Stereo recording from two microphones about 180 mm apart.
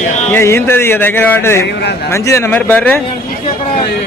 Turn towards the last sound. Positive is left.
turn(degrees=10)  # may be behind; listen again after turning